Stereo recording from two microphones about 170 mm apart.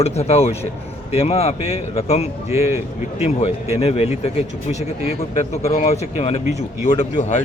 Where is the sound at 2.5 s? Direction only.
15° right (ahead or behind).